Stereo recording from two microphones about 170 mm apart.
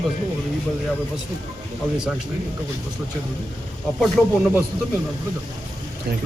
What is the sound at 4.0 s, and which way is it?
Speech, centre (ahead or behind).